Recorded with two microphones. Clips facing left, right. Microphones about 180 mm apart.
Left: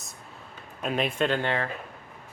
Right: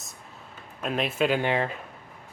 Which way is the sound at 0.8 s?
Centre (ahead or behind).